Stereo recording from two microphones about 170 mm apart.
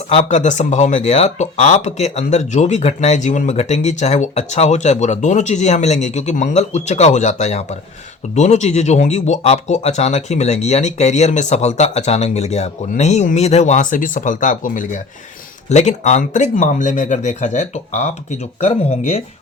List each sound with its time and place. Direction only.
0.2 s speech: 45° left (ahead or behind)